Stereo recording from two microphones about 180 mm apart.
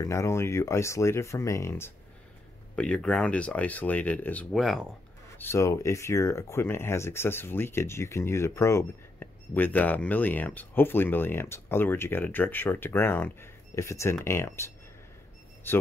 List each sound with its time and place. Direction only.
0.0 s speech: 15° left (ahead or behind); by 4.8 s centre (ahead or behind)
5.4 s speech: 15° left (ahead or behind)